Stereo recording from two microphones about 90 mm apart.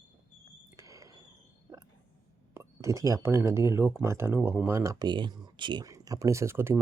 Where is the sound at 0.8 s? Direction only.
35° right (ahead or behind).